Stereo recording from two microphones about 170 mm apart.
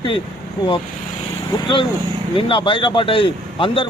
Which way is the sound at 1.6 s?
30° left (ahead or behind).